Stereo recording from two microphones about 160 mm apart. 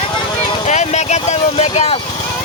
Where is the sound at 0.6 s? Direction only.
45° left (ahead or behind).